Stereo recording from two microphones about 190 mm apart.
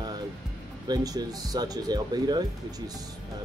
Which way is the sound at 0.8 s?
20° right (ahead or behind).